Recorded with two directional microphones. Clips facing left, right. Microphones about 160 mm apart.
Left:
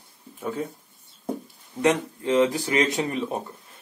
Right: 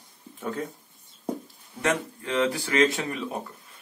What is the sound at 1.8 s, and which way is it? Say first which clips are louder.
Speech: left 5 dB; 20° left (ahead or behind).